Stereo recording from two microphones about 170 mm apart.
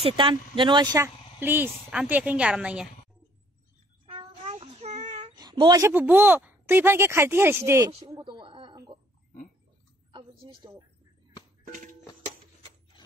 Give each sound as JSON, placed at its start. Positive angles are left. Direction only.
{"t": 0.0, "sound": "speech", "side_deg": -30}
{"t": 0.9, "sound": "speech", "side_deg": -15}
{"t": 4.0, "sound": "child singing", "side_deg": -30}
{"t": 5.3, "sound": "speech", "side_deg": -25}
{"t": 8.0, "sound": "a sound", "side_deg": -25}
{"t": 10.1, "sound": "a sound", "side_deg": -30}
{"t": 11.6, "sound": "music", "side_deg": -50}